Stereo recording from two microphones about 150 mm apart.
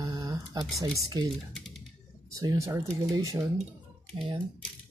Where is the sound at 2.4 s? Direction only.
20° right (ahead or behind).